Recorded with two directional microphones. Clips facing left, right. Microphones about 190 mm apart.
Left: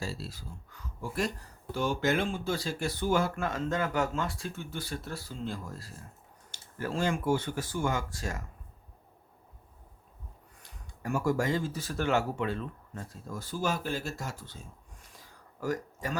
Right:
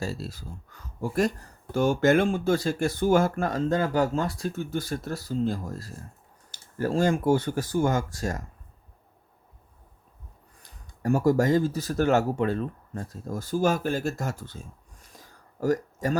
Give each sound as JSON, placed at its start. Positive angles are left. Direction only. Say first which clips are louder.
{"t": 0.0, "sound": "speech", "louder": "right 5 dB", "side_deg": -45}
{"t": 10.6, "sound": "speech", "louder": "right 9 dB", "side_deg": -40}